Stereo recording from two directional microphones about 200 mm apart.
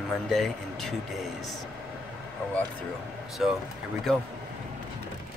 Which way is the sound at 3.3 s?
Centre (ahead or behind).